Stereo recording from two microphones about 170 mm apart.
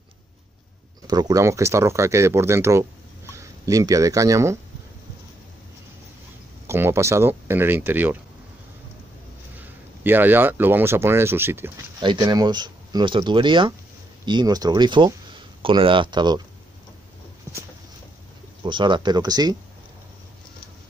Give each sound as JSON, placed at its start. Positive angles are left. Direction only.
{"t": 1.0, "sound": "speech", "side_deg": -20}
{"t": 6.7, "sound": "speech", "side_deg": -15}
{"t": 9.6, "sound": "speech", "side_deg": -10}
{"t": 12.0, "sound": "speech", "side_deg": -25}
{"t": 18.6, "sound": "speech", "side_deg": -30}